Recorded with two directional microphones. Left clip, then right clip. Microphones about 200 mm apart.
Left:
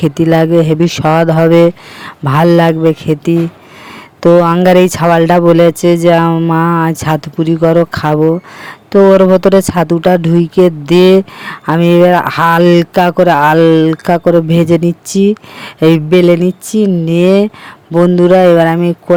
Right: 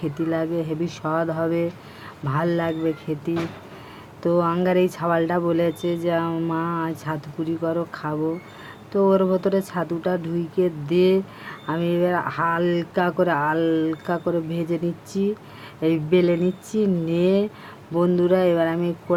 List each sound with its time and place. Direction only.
0.0 s speech: 50° left (ahead or behind)